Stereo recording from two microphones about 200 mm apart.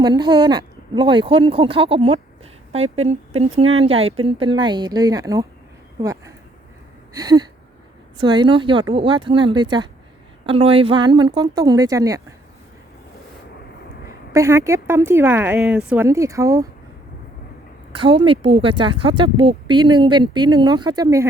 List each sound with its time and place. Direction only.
0.0 s a woman's voice: 20° right (ahead or behind)
14.3 s a woman's voice: 15° right (ahead or behind)
18.0 s speech: 25° right (ahead or behind)